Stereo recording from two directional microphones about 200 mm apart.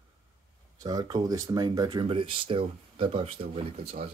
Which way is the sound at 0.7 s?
20° right (ahead or behind).